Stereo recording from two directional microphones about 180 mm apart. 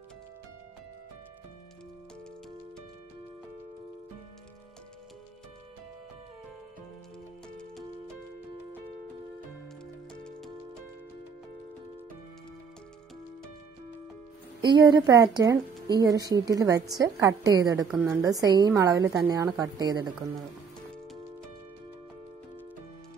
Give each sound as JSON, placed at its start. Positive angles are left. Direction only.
{"t": 10.1, "sound": "music", "side_deg": 5}
{"t": 14.6, "sound": "a woman's voice", "side_deg": -25}